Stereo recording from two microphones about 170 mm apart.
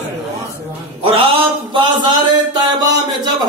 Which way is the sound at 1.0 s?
30° right (ahead or behind).